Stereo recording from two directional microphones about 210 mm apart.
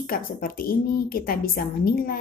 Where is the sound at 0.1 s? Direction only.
45° left (ahead or behind).